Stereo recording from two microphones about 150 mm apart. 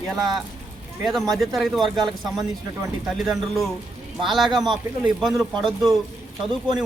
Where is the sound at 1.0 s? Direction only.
Centre (ahead or behind).